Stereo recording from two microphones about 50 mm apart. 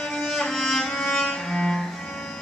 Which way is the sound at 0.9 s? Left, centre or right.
Centre.